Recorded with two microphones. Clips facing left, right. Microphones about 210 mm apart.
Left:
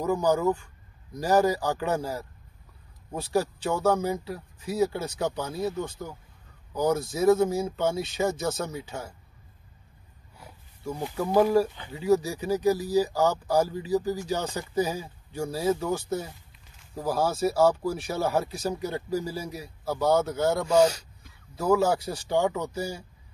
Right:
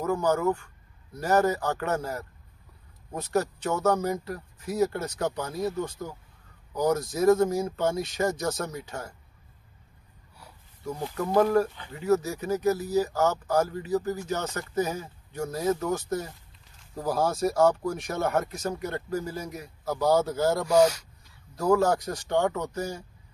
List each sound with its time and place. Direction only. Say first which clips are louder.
0.0 s speech: left 1 dB; 15° left (ahead or behind)
10.8 s speech: left 1 dB; 10° left (ahead or behind)
20.6 s speech: even; 30° left (ahead or behind)
21.5 s speech: even; 5° left (ahead or behind)